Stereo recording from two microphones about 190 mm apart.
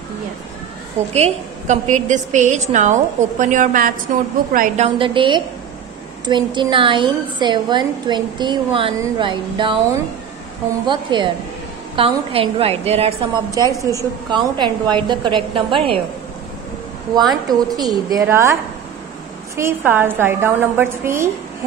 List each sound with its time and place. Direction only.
1.1 s a woman's voice: 35° right (ahead or behind)
4.8 s a woman's voice: 25° right (ahead or behind)
10.9 s a woman's voice: 25° right (ahead or behind)
13.6 s a woman's voice: 15° right (ahead or behind)
17.5 s a woman's voice: 20° right (ahead or behind)